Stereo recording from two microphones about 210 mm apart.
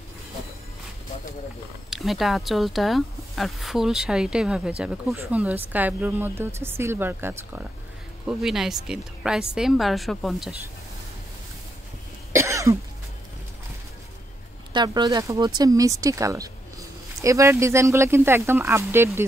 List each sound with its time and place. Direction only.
1.9 s speech: centre (ahead or behind)
12.4 s cough: 15° right (ahead or behind)
14.7 s speech: 20° right (ahead or behind)